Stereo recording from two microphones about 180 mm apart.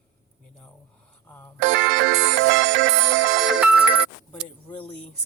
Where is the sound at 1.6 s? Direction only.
90° right.